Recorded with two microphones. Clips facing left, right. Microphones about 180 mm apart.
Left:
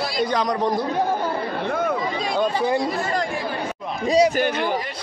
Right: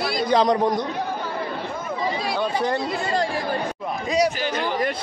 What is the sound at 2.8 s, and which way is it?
Speech, 25° right (ahead or behind).